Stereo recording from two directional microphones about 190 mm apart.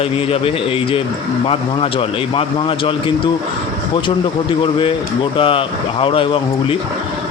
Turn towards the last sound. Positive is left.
turn(degrees=30)  # may be behind; listen again after turning